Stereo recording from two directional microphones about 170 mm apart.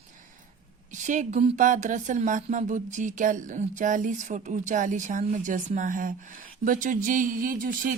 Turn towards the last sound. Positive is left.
turn(degrees=-55)  # may be behind; listen again after turning